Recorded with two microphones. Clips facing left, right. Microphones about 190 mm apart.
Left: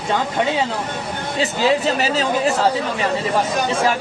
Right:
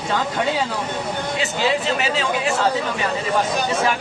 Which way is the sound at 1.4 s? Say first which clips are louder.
Left 5 dB; 40° left (ahead or behind).